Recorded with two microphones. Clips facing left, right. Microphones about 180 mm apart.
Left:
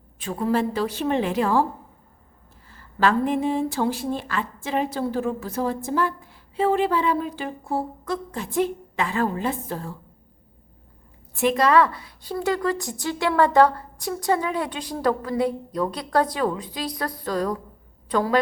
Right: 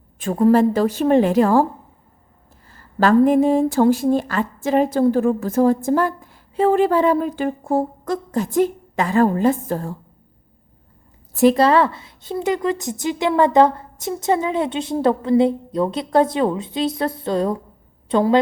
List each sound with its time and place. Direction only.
0.2 s speech: 45° right (ahead or behind)
2.6 s speech: 40° right (ahead or behind)
11.3 s speech: 35° right (ahead or behind)